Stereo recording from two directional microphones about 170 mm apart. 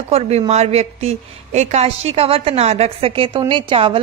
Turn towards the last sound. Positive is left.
turn(degrees=-30)  # may be behind; listen again after turning